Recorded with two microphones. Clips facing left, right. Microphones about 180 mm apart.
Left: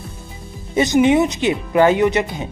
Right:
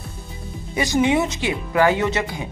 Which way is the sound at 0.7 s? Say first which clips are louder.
Left 5 dB; 20° left (ahead or behind).